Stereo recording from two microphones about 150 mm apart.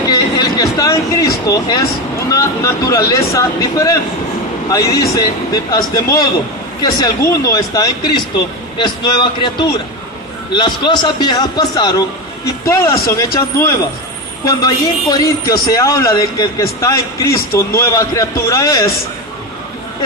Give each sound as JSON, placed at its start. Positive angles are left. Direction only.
{"t": 0.1, "sound": "a man's voice", "side_deg": 25}
{"t": 15.1, "sound": "a man's voice", "side_deg": 25}